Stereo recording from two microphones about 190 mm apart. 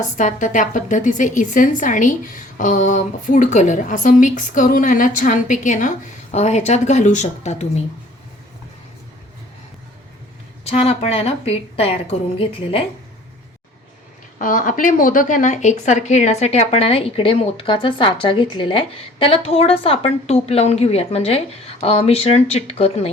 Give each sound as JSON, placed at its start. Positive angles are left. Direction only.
{"t": 0.0, "sound": "a woman's voice", "side_deg": 40}
{"t": 10.7, "sound": "a woman's voice", "side_deg": 35}
{"t": 14.3, "sound": "a woman's voice", "side_deg": 45}